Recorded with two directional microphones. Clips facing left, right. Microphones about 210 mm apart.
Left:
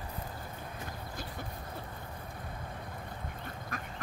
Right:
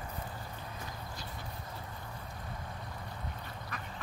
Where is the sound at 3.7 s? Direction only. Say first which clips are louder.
Left 4 dB; 45° left (ahead or behind).